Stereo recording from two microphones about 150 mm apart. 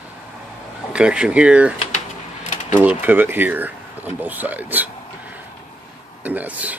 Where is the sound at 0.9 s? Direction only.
5° right (ahead or behind).